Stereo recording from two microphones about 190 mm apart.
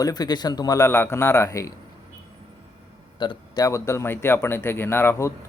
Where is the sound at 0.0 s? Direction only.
20° left (ahead or behind).